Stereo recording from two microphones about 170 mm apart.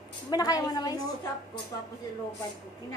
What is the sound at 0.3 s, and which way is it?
Speech, 20° left (ahead or behind).